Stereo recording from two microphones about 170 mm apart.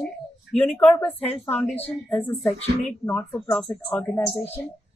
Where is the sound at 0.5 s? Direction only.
40° left (ahead or behind).